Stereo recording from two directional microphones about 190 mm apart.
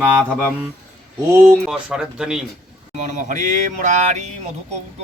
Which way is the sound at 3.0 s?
40° right (ahead or behind).